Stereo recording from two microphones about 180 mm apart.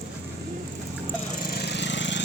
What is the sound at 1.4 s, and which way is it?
Wood, 65° left (ahead or behind).